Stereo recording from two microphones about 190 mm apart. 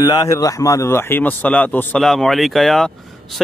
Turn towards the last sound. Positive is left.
turn(degrees=0)  # may be behind; listen again after turning